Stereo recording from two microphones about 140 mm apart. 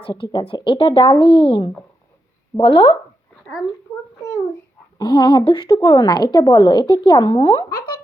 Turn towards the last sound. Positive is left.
turn(degrees=35)  # may be behind; listen again after turning